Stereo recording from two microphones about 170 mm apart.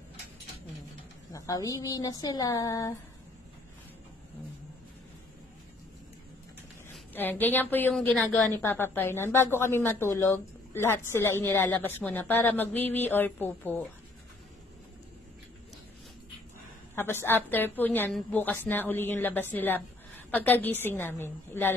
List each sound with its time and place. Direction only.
1.3 s speech: 20° left (ahead or behind)
7.2 s a woman's voice: 10° left (ahead or behind)
16.9 s a woman's voice: 15° left (ahead or behind)